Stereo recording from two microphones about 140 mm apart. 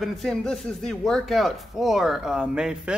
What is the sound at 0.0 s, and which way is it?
Speech, centre (ahead or behind).